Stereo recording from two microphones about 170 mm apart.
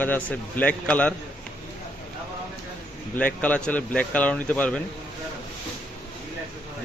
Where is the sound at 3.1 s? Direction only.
10° left (ahead or behind).